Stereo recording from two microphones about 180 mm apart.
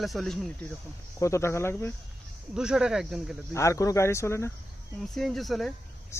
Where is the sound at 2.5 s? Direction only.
5° right (ahead or behind).